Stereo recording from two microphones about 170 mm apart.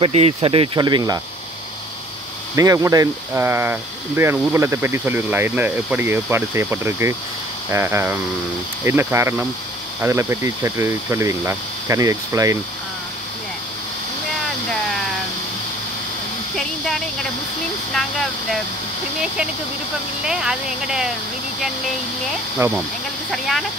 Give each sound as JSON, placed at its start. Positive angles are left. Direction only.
{"t": 0.0, "sound": "speech", "side_deg": -35}
{"t": 2.5, "sound": "speech", "side_deg": -20}
{"t": 16.5, "sound": "speech", "side_deg": 0}
{"t": 20.2, "sound": "speech", "side_deg": -5}
{"t": 22.6, "sound": "speech", "side_deg": -15}
{"t": 23.3, "sound": "speech", "side_deg": 0}